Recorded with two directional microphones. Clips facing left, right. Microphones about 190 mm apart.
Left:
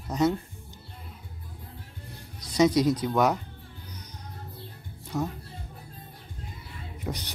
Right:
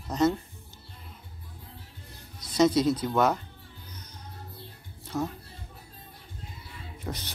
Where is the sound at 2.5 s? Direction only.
15° left (ahead or behind).